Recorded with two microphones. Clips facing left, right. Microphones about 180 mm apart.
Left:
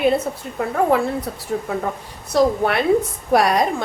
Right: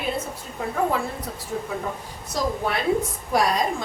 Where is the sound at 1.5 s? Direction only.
65° left (ahead or behind).